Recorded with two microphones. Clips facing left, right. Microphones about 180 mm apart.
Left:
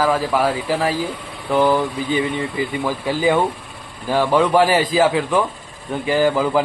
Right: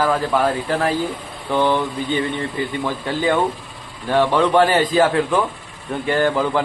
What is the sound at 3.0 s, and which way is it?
A man's voice, 10° left (ahead or behind).